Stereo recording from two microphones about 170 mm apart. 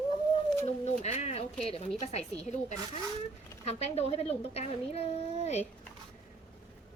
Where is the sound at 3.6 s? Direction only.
40° left (ahead or behind).